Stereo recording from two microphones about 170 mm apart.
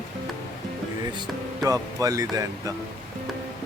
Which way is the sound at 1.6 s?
20° right (ahead or behind).